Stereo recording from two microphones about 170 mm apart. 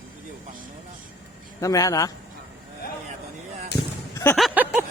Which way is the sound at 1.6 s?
20° left (ahead or behind).